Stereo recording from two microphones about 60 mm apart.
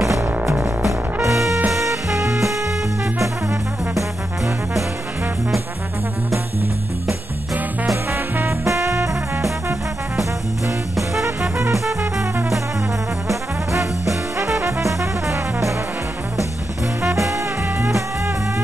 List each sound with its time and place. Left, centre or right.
1.3 s music: centre
8.5 s music: right
11.5 s music: right
13.3 s music: right
17.1 s swing music: right